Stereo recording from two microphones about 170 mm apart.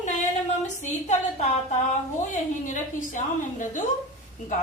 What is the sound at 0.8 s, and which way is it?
Speech, 45° left (ahead or behind).